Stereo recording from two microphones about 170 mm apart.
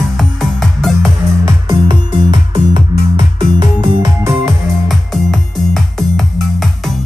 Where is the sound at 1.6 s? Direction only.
25° right (ahead or behind).